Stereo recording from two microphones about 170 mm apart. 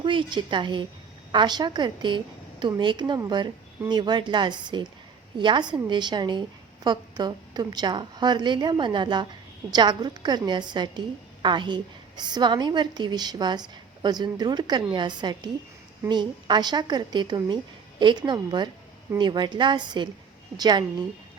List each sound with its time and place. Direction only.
0.0 s a woman's voice: 30° right (ahead or behind)